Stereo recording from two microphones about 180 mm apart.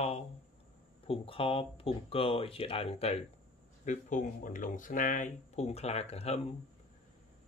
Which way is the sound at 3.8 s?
45° left (ahead or behind).